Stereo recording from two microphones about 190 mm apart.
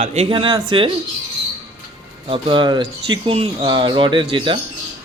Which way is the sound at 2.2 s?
25° right (ahead or behind).